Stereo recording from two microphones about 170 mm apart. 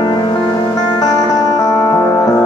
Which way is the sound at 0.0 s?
25° left (ahead or behind).